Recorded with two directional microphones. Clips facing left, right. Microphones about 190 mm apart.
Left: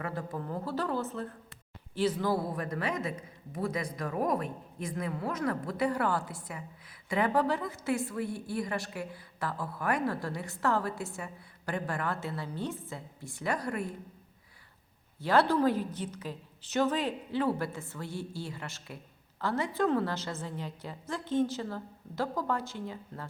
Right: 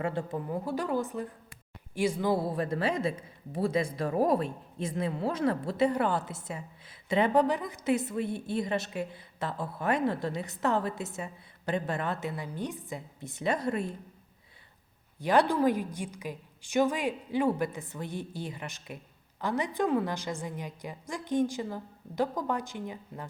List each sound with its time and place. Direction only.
0.0 s a woman's voice: 25° right (ahead or behind)
0.3 s a woman's voice: 15° right (ahead or behind)
15.2 s a woman's voice: 15° right (ahead or behind)